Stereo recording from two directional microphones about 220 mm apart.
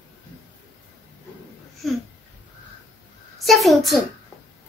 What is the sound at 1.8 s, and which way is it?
Babbling, centre (ahead or behind).